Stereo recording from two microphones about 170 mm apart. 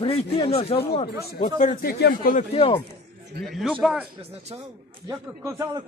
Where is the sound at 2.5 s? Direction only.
35° left (ahead or behind).